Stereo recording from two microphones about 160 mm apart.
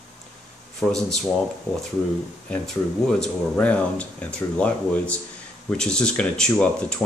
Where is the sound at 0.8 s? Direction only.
5° left (ahead or behind).